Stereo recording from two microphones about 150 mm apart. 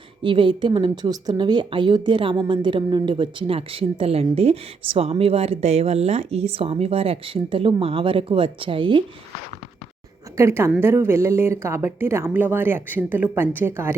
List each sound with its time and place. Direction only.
0.2 s a woman's voice: 35° right (ahead or behind)
10.3 s a woman's voice: 20° right (ahead or behind)